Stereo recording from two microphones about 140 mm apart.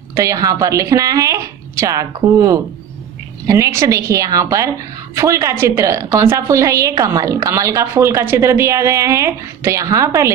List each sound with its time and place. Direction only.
0.1 s a woman's voice: 25° right (ahead or behind)
3.4 s a woman's voice: 25° right (ahead or behind)